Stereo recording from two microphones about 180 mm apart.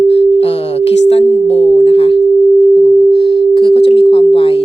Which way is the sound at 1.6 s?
35° left (ahead or behind).